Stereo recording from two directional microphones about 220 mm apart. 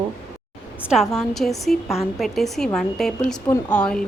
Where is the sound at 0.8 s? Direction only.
Centre (ahead or behind).